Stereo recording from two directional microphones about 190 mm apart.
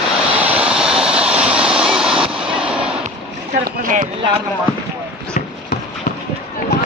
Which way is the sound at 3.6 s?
45° right (ahead or behind).